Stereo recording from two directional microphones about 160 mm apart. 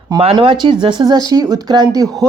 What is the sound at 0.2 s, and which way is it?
Speech, 35° right (ahead or behind).